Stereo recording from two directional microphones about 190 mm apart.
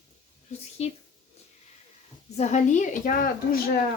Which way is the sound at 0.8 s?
35° left (ahead or behind).